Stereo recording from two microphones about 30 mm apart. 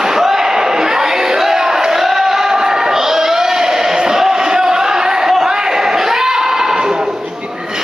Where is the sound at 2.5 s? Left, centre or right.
Right.